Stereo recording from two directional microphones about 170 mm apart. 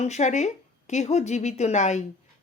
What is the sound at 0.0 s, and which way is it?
A woman's voice, 45° left (ahead or behind).